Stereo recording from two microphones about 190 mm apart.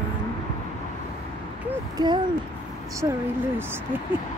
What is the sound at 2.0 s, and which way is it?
Speech, 25° right (ahead or behind).